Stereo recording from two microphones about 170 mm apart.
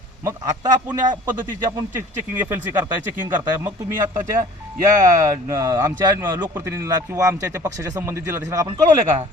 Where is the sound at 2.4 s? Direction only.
10° right (ahead or behind).